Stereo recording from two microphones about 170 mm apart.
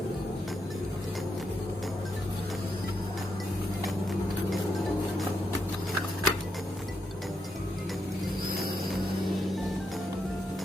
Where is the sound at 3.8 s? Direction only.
Centre (ahead or behind).